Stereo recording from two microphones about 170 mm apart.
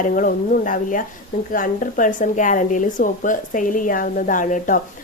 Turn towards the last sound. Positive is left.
turn(degrees=50)  # may be behind; listen again after turning